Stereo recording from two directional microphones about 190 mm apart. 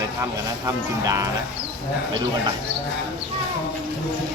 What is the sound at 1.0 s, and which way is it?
Speech, 15° right (ahead or behind).